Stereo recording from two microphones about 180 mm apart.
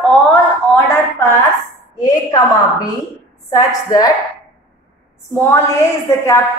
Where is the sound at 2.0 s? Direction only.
20° left (ahead or behind).